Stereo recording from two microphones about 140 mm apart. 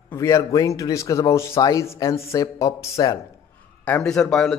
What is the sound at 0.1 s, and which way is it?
A man's voice, 20° left (ahead or behind).